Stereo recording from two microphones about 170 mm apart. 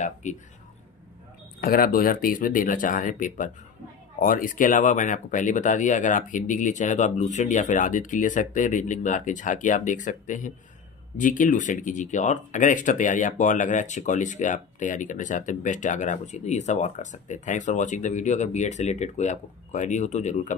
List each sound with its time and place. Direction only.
0.0 s speech: 45° left (ahead or behind)
1.6 s speech: 60° left (ahead or behind); by 20.5 s 45° left (ahead or behind)